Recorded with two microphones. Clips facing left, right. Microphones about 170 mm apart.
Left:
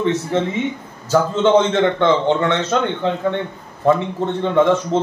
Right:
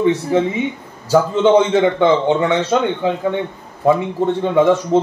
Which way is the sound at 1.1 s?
10° right (ahead or behind).